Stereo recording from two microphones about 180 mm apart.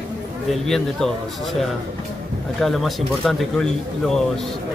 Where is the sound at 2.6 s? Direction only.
Centre (ahead or behind).